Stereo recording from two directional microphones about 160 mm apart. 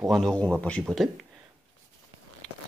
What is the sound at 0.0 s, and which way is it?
Speech, centre (ahead or behind).